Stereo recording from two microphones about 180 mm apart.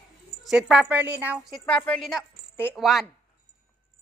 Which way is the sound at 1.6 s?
5° left (ahead or behind).